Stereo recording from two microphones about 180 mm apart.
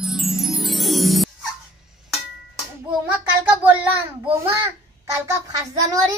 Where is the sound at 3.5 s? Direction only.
10° right (ahead or behind).